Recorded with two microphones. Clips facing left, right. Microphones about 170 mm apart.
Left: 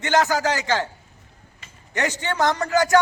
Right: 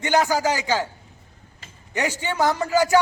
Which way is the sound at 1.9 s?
10° right (ahead or behind).